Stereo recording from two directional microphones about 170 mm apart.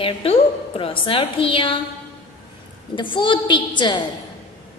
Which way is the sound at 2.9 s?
30° left (ahead or behind).